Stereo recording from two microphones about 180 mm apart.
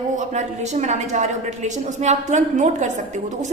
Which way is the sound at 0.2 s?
40° right (ahead or behind).